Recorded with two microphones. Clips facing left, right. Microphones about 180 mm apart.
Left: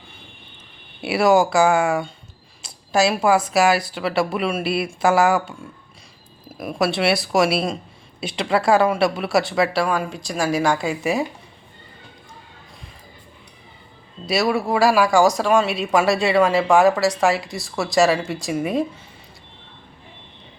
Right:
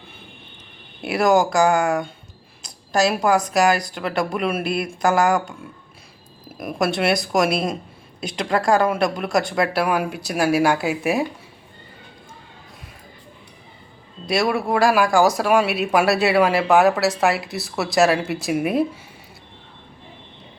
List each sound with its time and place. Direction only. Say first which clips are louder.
1.0 s speech: left 1 dB; 5° left (ahead or behind)
2.6 s a sound: left 1 dB; 5° left (ahead or behind)
3.5 s speech: left 1 dB; 5° left (ahead or behind)
14.3 s speech: even; centre (ahead or behind)